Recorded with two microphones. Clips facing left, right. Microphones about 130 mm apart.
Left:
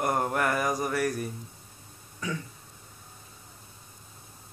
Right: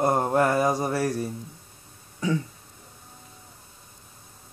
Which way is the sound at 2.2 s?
30° right (ahead or behind).